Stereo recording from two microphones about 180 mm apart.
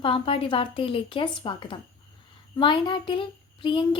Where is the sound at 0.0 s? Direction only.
30° left (ahead or behind).